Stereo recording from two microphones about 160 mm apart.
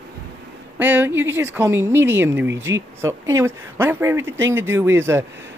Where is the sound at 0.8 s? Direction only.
10° right (ahead or behind).